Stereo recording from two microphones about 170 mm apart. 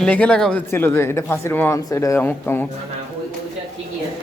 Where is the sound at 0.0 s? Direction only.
5° left (ahead or behind).